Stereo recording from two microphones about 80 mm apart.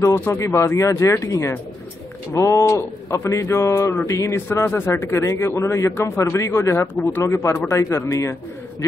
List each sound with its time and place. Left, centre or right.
0.0 s speech: left